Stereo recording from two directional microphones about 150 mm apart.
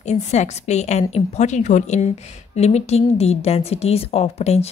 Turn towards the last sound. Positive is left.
turn(degrees=45)  # may be behind; listen again after turning